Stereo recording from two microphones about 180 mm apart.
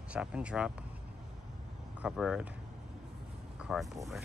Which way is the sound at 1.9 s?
5° right (ahead or behind).